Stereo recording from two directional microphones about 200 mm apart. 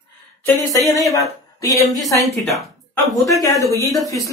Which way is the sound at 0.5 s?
15° left (ahead or behind).